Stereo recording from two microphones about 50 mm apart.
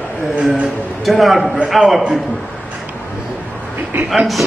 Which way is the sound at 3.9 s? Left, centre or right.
Right.